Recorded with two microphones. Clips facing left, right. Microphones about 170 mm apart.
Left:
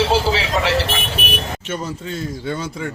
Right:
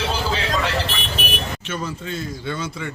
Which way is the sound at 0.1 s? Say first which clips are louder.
Left 5 dB; 90° left.